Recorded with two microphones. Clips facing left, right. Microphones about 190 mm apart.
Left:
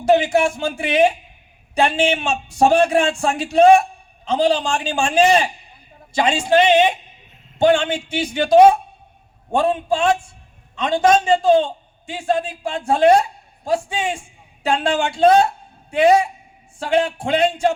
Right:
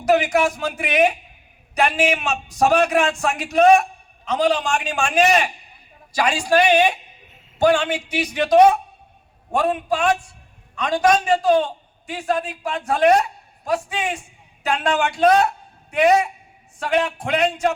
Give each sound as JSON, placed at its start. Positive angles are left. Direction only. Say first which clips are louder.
{"t": 0.0, "sound": "a man's voice", "louder": "left 2 dB", "side_deg": 30}